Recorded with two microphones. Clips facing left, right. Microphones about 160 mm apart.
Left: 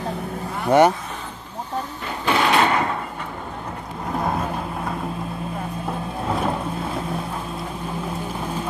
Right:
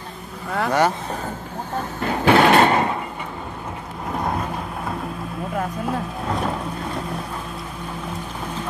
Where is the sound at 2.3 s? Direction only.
65° right (ahead or behind).